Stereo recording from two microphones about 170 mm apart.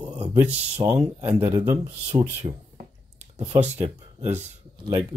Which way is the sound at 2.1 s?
40° right (ahead or behind).